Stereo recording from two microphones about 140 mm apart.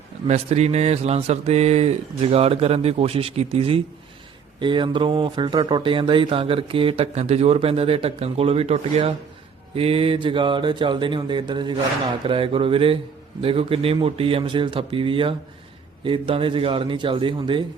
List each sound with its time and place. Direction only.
0.3 s speech: 50° right (ahead or behind)